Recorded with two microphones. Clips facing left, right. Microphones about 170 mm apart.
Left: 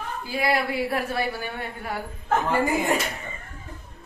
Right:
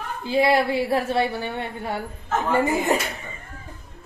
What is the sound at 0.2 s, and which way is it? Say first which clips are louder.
A woman's voice: right 6 dB; 25° right (ahead or behind).